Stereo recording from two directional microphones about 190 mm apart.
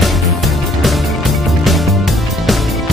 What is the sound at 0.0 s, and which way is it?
Music, centre (ahead or behind).